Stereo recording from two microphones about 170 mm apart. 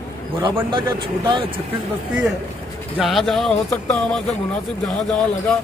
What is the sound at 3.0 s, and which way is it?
A man's voice, centre (ahead or behind).